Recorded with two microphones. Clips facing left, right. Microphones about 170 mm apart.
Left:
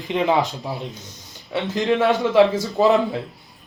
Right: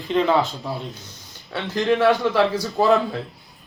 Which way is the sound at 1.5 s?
20° left (ahead or behind).